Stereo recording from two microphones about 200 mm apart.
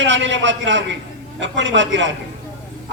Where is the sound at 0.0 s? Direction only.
65° right (ahead or behind).